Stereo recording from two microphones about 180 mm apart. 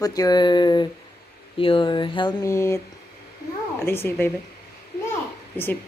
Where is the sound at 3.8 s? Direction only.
10° left (ahead or behind).